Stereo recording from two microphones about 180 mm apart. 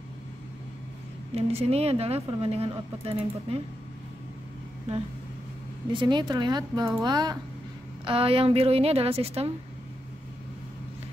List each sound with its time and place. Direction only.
1.3 s speech: 35° right (ahead or behind)
5.9 s speech: 25° right (ahead or behind)